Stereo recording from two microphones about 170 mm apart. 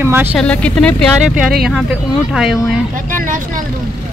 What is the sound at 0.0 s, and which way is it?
Speech, 10° right (ahead or behind).